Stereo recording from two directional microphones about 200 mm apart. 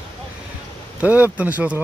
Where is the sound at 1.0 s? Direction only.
10° right (ahead or behind).